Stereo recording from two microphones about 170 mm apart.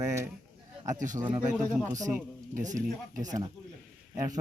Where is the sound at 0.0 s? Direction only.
15° right (ahead or behind).